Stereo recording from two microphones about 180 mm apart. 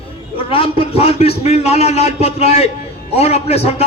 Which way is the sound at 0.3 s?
30° left (ahead or behind).